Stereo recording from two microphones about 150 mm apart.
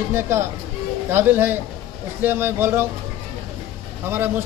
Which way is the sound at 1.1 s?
15° right (ahead or behind).